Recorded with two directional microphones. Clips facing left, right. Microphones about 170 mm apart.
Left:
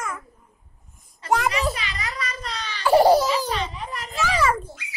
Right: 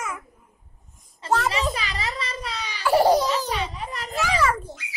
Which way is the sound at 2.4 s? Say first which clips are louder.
Even; 5° right (ahead or behind).